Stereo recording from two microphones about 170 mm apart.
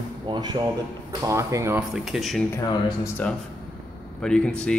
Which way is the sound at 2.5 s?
20° left (ahead or behind).